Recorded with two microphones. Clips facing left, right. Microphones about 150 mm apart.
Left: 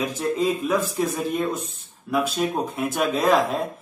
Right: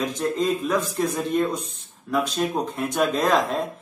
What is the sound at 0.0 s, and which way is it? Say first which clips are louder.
Speech: left 1 dB; 5° left (ahead or behind).